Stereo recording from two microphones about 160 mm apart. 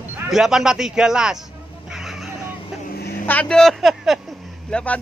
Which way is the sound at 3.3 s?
5° left (ahead or behind).